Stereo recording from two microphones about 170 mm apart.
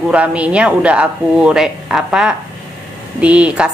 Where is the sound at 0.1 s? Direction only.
5° right (ahead or behind).